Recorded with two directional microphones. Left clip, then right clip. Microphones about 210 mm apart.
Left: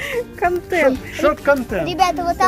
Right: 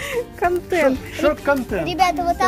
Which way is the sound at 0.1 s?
15° right (ahead or behind).